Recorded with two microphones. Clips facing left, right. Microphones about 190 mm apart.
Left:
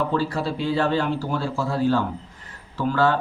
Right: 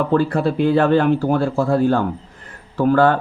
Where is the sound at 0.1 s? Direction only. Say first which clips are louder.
Right 7 dB; 55° right (ahead or behind).